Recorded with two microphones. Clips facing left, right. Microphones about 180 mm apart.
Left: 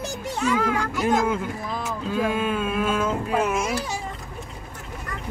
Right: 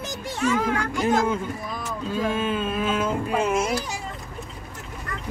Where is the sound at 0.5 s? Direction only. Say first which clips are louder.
Left 1 dB; 5° left (ahead or behind).